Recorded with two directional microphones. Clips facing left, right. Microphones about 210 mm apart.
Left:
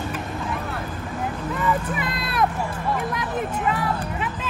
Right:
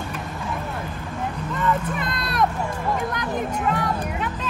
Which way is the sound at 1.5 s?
5° left (ahead or behind).